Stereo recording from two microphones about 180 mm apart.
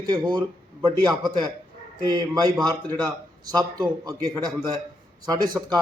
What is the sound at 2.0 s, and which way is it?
A man's voice, 25° right (ahead or behind).